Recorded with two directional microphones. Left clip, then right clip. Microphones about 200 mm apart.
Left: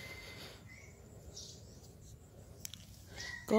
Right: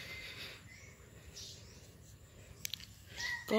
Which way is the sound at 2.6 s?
20° left (ahead or behind).